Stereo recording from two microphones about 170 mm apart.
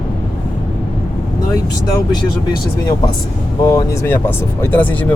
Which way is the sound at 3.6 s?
20° left (ahead or behind).